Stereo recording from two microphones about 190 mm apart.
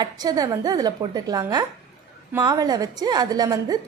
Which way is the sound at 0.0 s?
20° right (ahead or behind).